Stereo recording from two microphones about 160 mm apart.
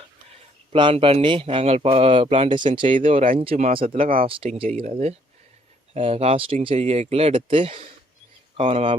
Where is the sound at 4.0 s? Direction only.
60° right (ahead or behind).